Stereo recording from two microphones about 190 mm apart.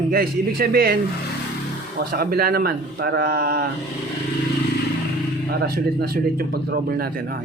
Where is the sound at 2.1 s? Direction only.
55° right (ahead or behind).